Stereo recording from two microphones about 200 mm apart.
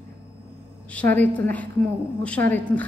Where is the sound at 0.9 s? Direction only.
10° left (ahead or behind).